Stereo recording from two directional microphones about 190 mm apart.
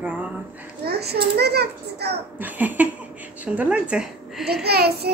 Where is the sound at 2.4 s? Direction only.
10° right (ahead or behind).